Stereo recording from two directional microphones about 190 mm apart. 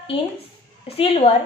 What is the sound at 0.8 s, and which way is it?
Speech, 30° left (ahead or behind).